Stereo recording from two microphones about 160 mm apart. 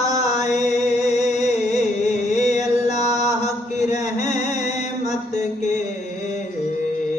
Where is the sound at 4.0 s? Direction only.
50° left (ahead or behind).